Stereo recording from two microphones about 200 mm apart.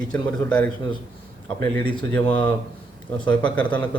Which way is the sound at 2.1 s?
10° left (ahead or behind).